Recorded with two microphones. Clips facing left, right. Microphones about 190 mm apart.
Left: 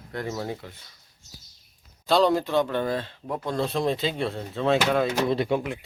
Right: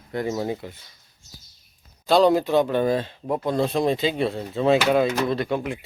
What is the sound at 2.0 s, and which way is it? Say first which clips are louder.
Speech: right 4 dB; 5° right (ahead or behind).